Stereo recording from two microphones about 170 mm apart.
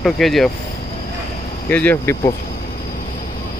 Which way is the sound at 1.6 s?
10° left (ahead or behind).